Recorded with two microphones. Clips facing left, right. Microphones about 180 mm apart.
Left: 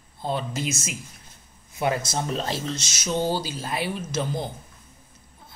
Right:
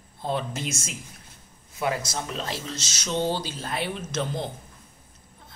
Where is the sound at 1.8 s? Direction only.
25° left (ahead or behind).